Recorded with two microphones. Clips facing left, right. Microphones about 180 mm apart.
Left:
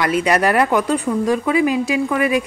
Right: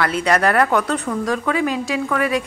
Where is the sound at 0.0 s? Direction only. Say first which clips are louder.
Left 1 dB; 10° left (ahead or behind).